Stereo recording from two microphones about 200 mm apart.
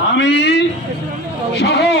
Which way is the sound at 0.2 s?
60° left (ahead or behind).